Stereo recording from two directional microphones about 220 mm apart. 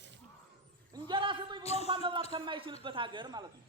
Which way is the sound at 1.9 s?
25° right (ahead or behind).